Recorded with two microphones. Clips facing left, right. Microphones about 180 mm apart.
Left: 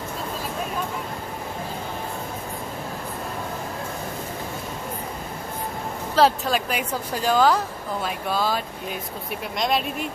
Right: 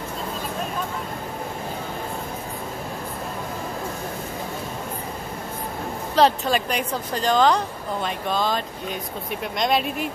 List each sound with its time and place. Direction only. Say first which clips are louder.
6.1 s a woman's voice: right 1 dB; centre (ahead or behind)